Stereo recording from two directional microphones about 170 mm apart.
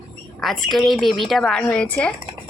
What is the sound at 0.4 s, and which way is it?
A woman's voice, centre (ahead or behind).